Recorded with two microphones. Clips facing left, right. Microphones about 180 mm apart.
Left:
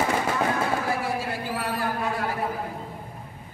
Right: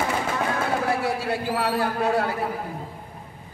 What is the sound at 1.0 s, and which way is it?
A man's voice, 70° right (ahead or behind).